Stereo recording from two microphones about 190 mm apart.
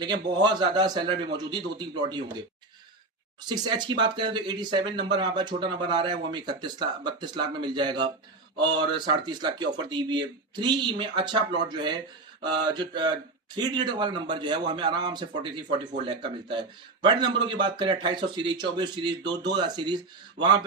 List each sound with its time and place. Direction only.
0.4 s speech: 20° right (ahead or behind)
3.4 s speech: 20° right (ahead or behind)